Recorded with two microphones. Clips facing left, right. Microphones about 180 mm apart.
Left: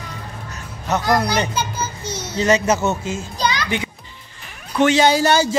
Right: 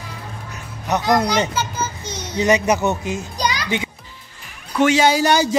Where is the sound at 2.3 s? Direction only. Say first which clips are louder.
Even; 15° right (ahead or behind).